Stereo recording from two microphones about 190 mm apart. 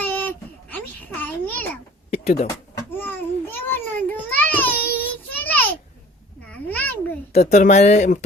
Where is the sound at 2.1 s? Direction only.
35° left (ahead or behind).